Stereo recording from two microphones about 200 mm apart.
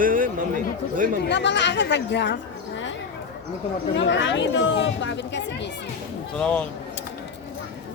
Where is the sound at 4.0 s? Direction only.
65° left (ahead or behind).